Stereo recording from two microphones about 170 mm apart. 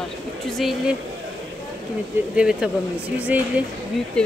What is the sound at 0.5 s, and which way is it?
Speech, centre (ahead or behind).